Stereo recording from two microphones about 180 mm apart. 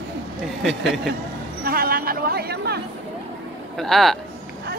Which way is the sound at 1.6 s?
55° right (ahead or behind).